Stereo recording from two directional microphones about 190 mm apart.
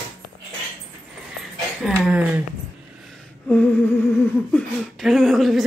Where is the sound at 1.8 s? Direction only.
5° right (ahead or behind).